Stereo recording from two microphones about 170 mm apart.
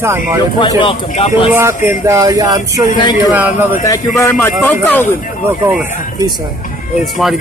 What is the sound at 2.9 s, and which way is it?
Speech, 25° left (ahead or behind).